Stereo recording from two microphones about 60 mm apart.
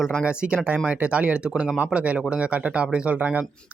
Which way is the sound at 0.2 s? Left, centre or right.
Centre.